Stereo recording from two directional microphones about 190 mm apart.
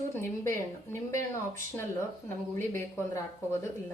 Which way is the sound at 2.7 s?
10° left (ahead or behind).